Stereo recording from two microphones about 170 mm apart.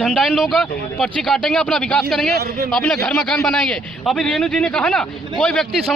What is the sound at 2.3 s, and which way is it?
Speech, 65° right (ahead or behind).